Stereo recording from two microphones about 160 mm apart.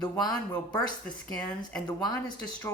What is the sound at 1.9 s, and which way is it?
Speech, 25° left (ahead or behind).